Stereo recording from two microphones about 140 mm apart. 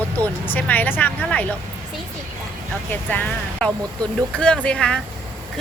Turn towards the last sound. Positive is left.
turn(degrees=5)  # may be behind; listen again after turning